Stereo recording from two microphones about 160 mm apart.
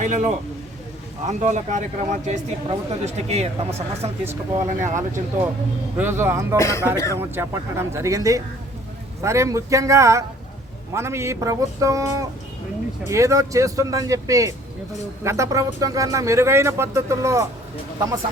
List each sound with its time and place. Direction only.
0.0 s speech: 50° right (ahead or behind)
4.8 s speech: 15° right (ahead or behind)
6.6 s speech: 20° left (ahead or behind)
7.2 s speech: 15° right (ahead or behind)